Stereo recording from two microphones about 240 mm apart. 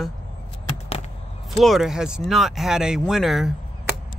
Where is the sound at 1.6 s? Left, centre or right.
Centre.